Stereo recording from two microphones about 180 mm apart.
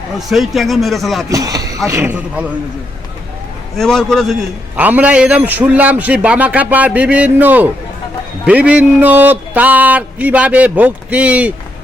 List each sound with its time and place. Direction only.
0.2 s speech: centre (ahead or behind)
1.3 s speech: 20° right (ahead or behind)
3.8 s speech: 5° left (ahead or behind)
4.8 s speech: 10° right (ahead or behind)